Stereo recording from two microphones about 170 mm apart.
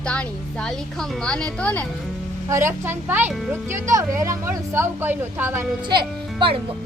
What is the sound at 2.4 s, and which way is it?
Speech, 15° right (ahead or behind).